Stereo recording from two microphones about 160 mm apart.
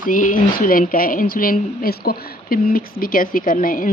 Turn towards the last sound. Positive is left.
turn(degrees=60)  # may be behind; listen again after turning